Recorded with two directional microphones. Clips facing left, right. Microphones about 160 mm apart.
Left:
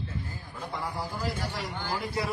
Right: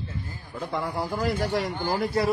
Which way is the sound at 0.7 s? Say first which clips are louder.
Right 6 dB; 70° right (ahead or behind).